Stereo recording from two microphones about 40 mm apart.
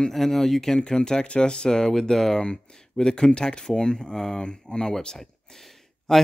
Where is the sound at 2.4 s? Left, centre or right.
Left.